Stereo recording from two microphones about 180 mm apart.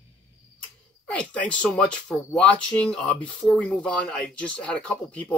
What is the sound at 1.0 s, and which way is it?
Speech, 5° left (ahead or behind).